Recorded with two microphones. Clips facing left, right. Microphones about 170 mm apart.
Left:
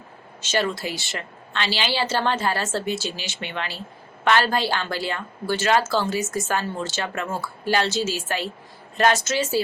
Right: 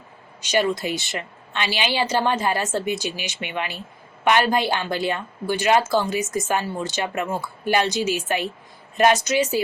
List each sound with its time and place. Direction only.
0.4 s a woman's voice: 15° right (ahead or behind)